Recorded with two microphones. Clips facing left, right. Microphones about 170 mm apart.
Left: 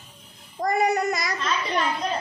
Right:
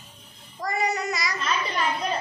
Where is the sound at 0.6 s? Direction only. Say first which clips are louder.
Left 5 dB; 55° left (ahead or behind).